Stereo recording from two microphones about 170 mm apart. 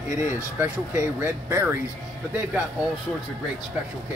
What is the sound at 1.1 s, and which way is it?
Speech, 10° right (ahead or behind).